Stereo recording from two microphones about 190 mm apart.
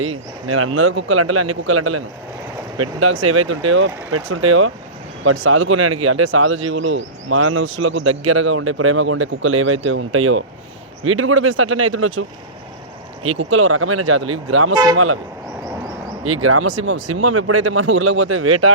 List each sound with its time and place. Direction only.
0.8 s speech: 90° right
13.2 s speech: 90° right
16.2 s speech: 90° right